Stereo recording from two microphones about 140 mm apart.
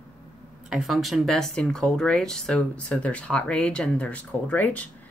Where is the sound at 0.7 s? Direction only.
Centre (ahead or behind).